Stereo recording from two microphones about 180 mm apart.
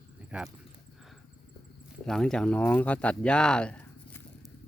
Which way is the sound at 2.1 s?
5° left (ahead or behind).